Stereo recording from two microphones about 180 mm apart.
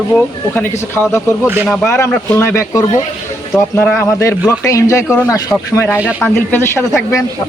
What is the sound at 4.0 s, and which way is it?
A man's voice, 15° left (ahead or behind).